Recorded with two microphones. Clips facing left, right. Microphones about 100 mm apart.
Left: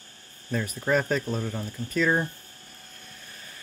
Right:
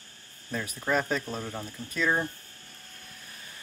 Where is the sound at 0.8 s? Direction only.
Centre (ahead or behind).